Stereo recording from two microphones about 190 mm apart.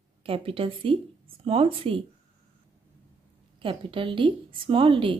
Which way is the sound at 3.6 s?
25° right (ahead or behind).